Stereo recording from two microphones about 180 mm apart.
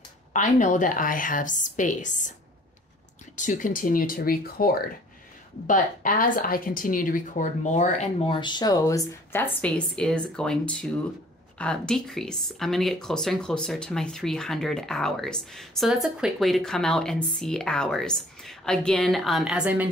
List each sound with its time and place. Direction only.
0.3 s a woman's voice: 40° left (ahead or behind)
3.3 s a woman's voice: 45° left (ahead or behind); by 19.9 s 5° right (ahead or behind)